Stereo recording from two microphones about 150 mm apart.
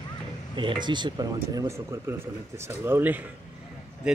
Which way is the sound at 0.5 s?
30° right (ahead or behind).